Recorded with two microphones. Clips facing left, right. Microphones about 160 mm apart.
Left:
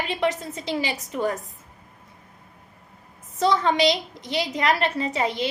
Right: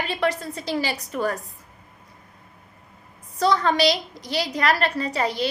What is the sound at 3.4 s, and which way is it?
A woman's voice, 20° left (ahead or behind).